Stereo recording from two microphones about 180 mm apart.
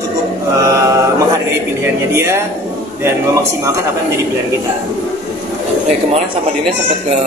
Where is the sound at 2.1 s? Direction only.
15° right (ahead or behind).